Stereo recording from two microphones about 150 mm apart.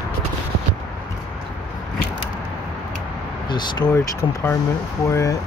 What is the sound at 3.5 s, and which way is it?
Speech, 30° left (ahead or behind).